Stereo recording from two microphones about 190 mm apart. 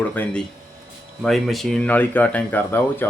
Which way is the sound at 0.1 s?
10° left (ahead or behind).